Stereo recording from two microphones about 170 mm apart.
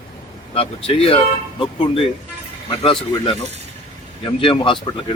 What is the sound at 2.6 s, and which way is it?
Speech, 30° left (ahead or behind).